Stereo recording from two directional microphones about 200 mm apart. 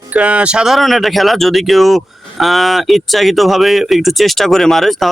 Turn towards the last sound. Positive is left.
turn(degrees=0)  # may be behind; listen again after turning